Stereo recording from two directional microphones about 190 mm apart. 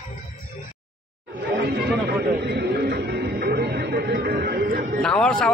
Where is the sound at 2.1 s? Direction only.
60° right (ahead or behind).